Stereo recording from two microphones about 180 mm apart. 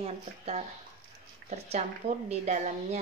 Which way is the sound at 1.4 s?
35° right (ahead or behind).